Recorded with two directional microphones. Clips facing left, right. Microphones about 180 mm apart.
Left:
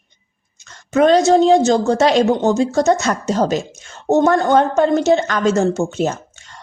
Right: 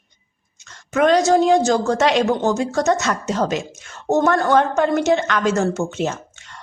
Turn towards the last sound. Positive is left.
turn(degrees=40)  # may be behind; listen again after turning